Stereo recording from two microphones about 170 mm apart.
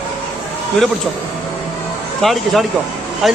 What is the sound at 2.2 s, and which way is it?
Speech, centre (ahead or behind).